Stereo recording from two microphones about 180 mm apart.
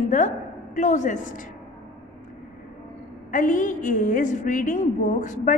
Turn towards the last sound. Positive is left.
turn(degrees=45)  # may be behind; listen again after turning